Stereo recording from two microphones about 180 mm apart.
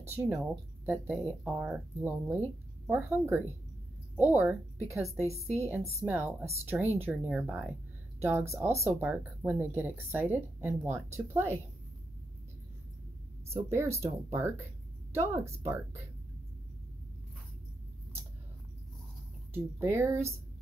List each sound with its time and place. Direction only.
0.1 s a woman's voice: 10° right (ahead or behind)
13.5 s speech: 15° right (ahead or behind)
19.5 s speech: 15° right (ahead or behind)